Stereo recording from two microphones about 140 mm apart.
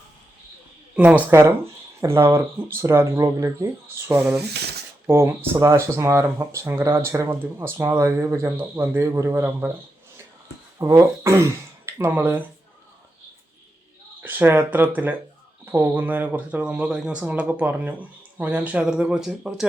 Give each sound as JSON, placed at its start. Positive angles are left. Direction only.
{"t": 0.9, "sound": "speech", "side_deg": -10}
{"t": 5.0, "sound": "speech", "side_deg": -15}
{"t": 10.8, "sound": "speech", "side_deg": -20}
{"t": 14.2, "sound": "speech", "side_deg": -15}